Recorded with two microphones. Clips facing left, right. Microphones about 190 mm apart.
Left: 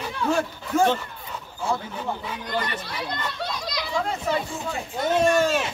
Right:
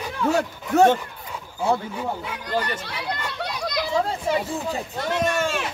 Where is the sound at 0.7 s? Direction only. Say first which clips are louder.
Right 5 dB; 70° right (ahead or behind).